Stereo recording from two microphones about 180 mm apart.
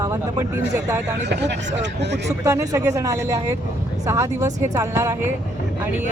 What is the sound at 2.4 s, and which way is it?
Speech, 20° right (ahead or behind).